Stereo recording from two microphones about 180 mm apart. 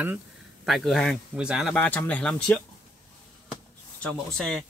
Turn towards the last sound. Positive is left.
turn(degrees=5)  # may be behind; listen again after turning